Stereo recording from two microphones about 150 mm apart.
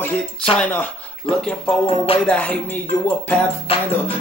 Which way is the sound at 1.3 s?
5° left (ahead or behind).